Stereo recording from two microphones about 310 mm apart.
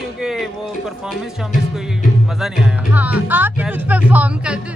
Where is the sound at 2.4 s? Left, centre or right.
Centre.